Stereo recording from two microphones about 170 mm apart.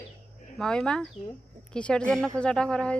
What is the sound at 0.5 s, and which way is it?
A woman's voice, 5° left (ahead or behind).